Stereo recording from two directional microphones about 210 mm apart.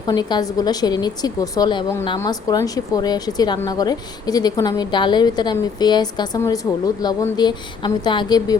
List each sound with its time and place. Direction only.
0.1 s a woman's voice: 20° left (ahead or behind)